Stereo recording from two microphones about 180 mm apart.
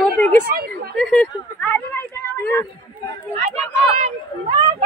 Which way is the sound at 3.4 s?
35° right (ahead or behind).